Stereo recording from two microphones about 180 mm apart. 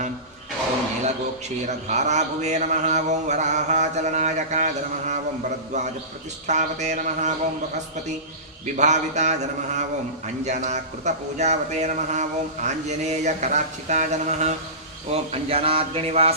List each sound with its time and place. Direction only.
1.6 s speech: 40° right (ahead or behind)
8.7 s speech: 40° right (ahead or behind)
10.4 s speech: 40° right (ahead or behind)